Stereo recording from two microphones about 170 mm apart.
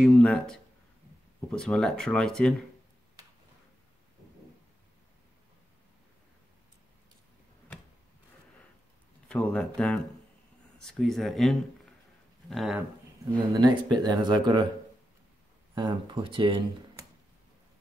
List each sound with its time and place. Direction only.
0.2 s speech: 5° left (ahead or behind)
9.3 s speech: 5° left (ahead or behind)
13.5 s speech: 25° right (ahead or behind)
15.7 s speech: 30° right (ahead or behind)